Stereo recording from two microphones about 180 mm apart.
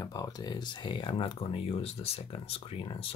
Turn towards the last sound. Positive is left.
turn(degrees=30)  # may be behind; listen again after turning